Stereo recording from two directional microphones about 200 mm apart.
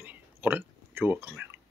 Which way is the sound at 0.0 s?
10° right (ahead or behind).